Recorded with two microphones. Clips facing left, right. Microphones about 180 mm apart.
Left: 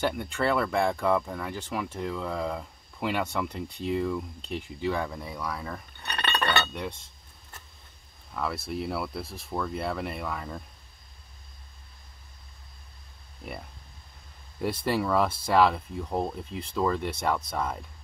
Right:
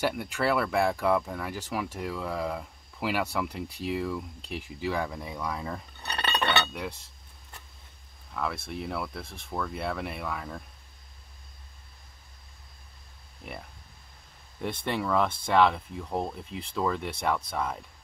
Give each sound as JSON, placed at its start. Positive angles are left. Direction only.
{"t": 0.0, "sound": "speech", "side_deg": -5}
{"t": 6.0, "sound": "chink", "side_deg": -30}
{"t": 6.6, "sound": "speech", "side_deg": -5}
{"t": 8.3, "sound": "speech", "side_deg": 0}
{"t": 14.6, "sound": "speech", "side_deg": 5}